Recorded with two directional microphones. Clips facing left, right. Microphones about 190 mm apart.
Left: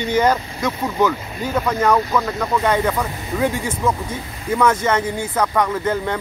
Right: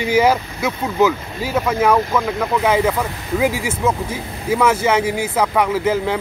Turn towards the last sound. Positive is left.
turn(degrees=-5)  # may be behind; listen again after turning